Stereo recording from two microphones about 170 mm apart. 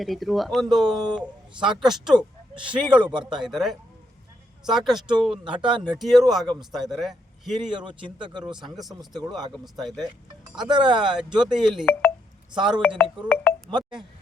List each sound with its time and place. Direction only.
0.0 s speech: centre (ahead or behind)
3.0 s speech: 25° right (ahead or behind)
3.6 s speech: centre (ahead or behind)
5.6 s speech: 30° right (ahead or behind)
6.0 s a man's voice: centre (ahead or behind)
10.6 s speech: 25° right (ahead or behind)
11.5 s speech: 5° right (ahead or behind)
12.5 s speech: 25° right (ahead or behind)
13.2 s chink: 10° left (ahead or behind)